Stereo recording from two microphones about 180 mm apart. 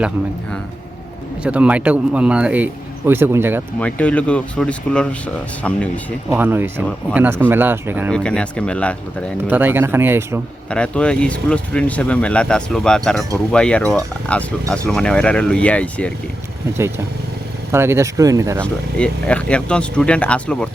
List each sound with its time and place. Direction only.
1.5 s speech: 5° right (ahead or behind)
3.8 s speech: 10° left (ahead or behind)
6.3 s speech: 10° right (ahead or behind)
8.1 s speech: 5° left (ahead or behind)
9.5 s speech: 10° right (ahead or behind)
10.7 s speech: 5° left (ahead or behind)
17.7 s speech: 15° right (ahead or behind)
18.6 s speech: 5° left (ahead or behind)